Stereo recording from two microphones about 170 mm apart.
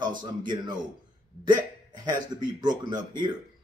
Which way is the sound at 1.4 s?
25° right (ahead or behind).